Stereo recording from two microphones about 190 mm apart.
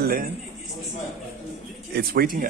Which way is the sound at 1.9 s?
50° right (ahead or behind).